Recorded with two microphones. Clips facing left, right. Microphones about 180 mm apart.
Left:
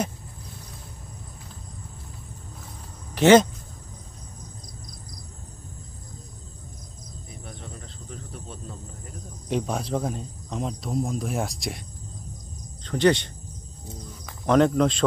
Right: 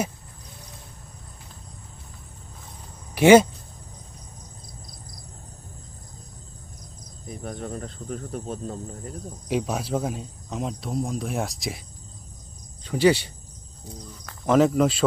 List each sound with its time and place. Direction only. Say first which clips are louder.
3.2 s speech: right 2 dB; 10° right (ahead or behind)
7.3 s cricket: right 10 dB; 45° right (ahead or behind)
9.5 s speech: right 1 dB; 5° right (ahead or behind)
12.8 s speech: right 1 dB; 10° right (ahead or behind)
14.4 s speech: even; 5° right (ahead or behind)